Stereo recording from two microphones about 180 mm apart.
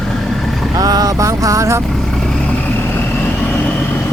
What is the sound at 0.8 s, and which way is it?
Vehicle, 20° right (ahead or behind).